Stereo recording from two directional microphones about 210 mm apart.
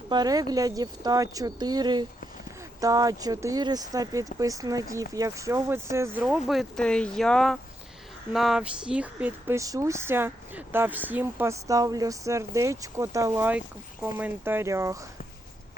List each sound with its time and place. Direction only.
0.1 s speech: 20° right (ahead or behind)
6.2 s speech: centre (ahead or behind)